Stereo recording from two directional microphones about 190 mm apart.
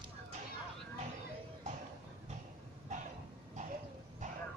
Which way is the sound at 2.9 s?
40° right (ahead or behind).